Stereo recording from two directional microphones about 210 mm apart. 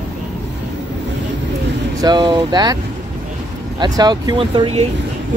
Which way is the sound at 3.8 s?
20° right (ahead or behind).